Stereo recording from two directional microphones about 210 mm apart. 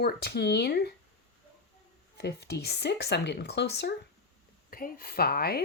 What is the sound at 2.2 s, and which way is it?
Speech, 50° left (ahead or behind).